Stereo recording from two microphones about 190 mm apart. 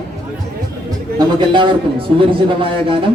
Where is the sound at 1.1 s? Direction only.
25° right (ahead or behind).